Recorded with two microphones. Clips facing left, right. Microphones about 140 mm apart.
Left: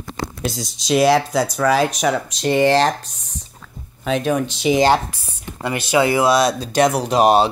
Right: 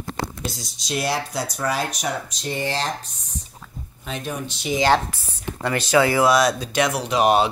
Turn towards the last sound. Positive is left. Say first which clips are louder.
# left 4 dB
turn(degrees=35)  # may be behind; listen again after turning